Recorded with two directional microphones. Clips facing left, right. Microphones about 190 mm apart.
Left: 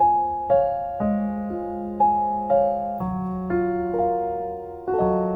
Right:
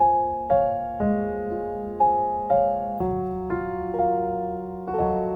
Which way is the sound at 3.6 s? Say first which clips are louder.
Left 6 dB; 60° left (ahead or behind).